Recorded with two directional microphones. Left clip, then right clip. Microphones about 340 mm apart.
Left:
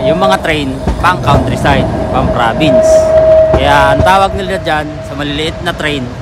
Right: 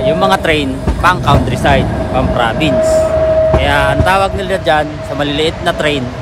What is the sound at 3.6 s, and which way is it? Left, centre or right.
Speech, centre.